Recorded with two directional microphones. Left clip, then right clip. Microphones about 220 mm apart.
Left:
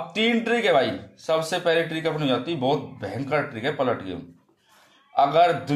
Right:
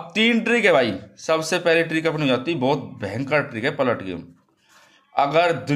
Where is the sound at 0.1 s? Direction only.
30° right (ahead or behind).